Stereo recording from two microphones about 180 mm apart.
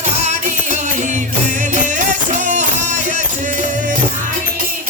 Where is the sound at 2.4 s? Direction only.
45° right (ahead or behind).